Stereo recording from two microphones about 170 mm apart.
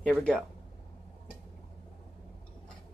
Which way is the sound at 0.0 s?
5° left (ahead or behind).